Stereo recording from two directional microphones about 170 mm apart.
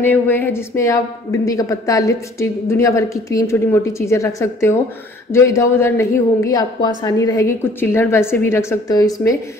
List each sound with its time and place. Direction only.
0.0 s speech: 10° left (ahead or behind)